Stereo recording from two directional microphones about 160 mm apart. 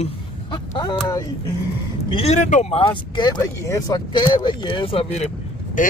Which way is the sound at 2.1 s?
35° left (ahead or behind).